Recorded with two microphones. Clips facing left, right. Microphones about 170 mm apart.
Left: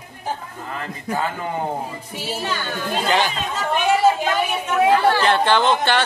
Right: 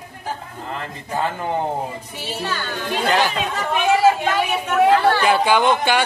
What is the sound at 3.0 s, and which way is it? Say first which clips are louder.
Speech: right 2 dB; centre (ahead or behind).